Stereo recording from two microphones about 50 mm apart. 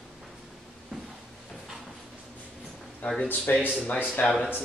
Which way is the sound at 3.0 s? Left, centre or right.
Left.